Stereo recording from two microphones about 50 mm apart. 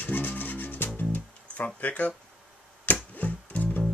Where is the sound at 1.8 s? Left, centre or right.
Left.